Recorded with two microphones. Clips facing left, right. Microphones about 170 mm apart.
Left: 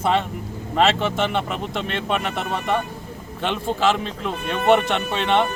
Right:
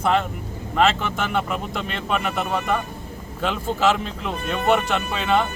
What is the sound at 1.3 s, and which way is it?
A man's voice, centre (ahead or behind).